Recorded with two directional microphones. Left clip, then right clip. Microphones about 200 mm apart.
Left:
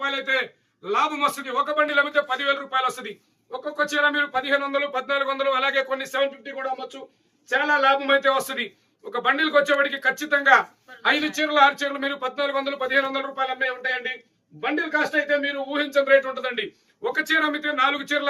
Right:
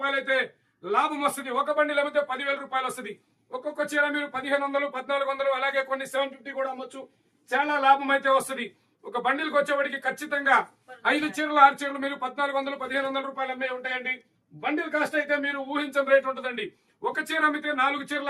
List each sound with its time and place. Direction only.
0.0 s a man's voice: 10° right (ahead or behind)